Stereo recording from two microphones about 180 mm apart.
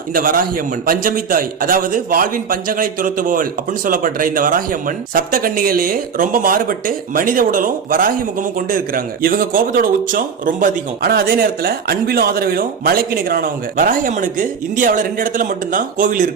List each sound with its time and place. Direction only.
0.1 s a man's voice: 50° right (ahead or behind)